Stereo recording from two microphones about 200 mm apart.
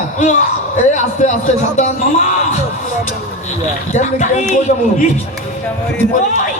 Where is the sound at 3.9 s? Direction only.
35° left (ahead or behind).